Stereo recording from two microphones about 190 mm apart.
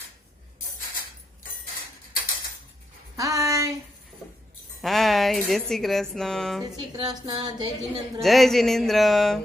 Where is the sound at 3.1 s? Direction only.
15° right (ahead or behind).